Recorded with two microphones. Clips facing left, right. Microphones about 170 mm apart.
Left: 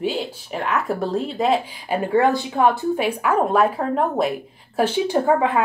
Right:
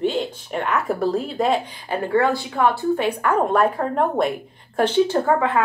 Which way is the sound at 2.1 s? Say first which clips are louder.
Left 2 dB; 20° left (ahead or behind).